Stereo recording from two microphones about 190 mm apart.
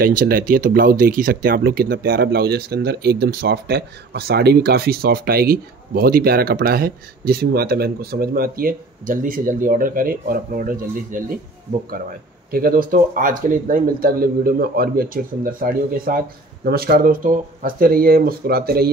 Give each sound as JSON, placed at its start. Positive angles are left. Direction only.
{"t": 0.0, "sound": "speech", "side_deg": -50}
{"t": 12.4, "sound": "speech", "side_deg": -50}